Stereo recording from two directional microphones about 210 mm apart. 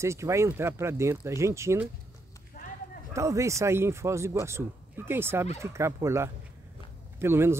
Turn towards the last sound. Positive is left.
turn(degrees=-10)  # may be behind; listen again after turning